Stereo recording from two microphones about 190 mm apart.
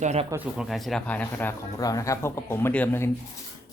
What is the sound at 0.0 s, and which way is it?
Speech, 35° right (ahead or behind).